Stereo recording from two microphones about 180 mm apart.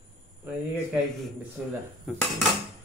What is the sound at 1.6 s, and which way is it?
Speech, 10° right (ahead or behind).